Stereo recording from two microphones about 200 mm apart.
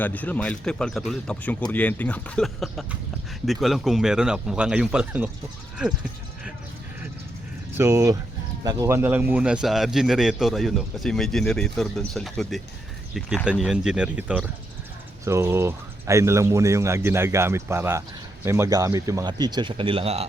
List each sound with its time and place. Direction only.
0.0 s a man's voice: 10° left (ahead or behind)
7.8 s a man's voice: 15° right (ahead or behind); by 20.2 s 30° right (ahead or behind)